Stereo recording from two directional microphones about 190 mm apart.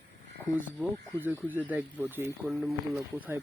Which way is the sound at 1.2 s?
10° right (ahead or behind).